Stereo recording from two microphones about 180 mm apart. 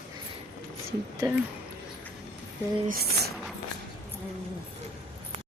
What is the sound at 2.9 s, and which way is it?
Speech, 60° right (ahead or behind).